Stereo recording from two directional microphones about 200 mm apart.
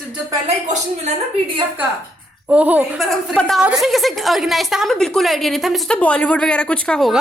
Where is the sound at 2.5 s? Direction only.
10° right (ahead or behind).